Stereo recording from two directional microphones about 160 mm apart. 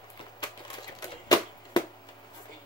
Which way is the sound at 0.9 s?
25° left (ahead or behind).